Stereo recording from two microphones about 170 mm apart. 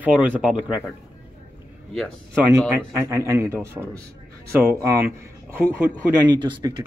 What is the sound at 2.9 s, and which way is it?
Speech, 15° right (ahead or behind).